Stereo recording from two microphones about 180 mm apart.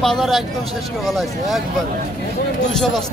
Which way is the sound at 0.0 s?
Centre (ahead or behind).